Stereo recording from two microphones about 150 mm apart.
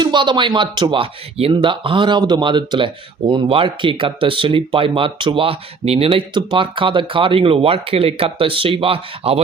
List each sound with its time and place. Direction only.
0.0 s speech: 30° right (ahead or behind)